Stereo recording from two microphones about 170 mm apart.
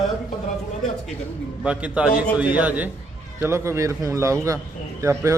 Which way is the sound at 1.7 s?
5° right (ahead or behind).